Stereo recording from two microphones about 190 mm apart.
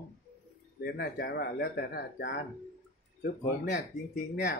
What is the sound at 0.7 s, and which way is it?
Speech, 60° left (ahead or behind).